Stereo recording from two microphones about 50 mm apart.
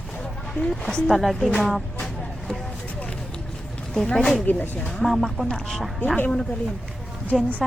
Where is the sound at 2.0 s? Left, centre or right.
Centre.